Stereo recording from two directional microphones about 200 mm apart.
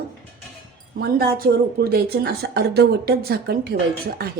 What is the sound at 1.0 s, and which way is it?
A woman's voice, 50° right (ahead or behind).